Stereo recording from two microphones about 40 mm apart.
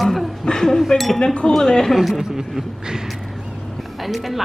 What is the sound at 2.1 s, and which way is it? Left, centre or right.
Speech, centre.